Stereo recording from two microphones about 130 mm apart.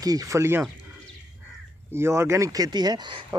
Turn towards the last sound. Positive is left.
turn(degrees=-40)  # may be behind; listen again after turning